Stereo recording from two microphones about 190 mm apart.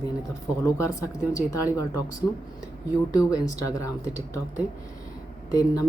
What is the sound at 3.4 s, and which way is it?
Speech, 20° left (ahead or behind).